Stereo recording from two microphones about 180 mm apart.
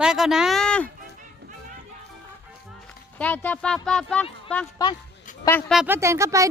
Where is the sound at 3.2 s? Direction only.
10° left (ahead or behind).